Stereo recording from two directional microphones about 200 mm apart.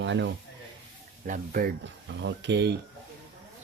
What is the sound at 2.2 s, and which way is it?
Speech, 60° right (ahead or behind).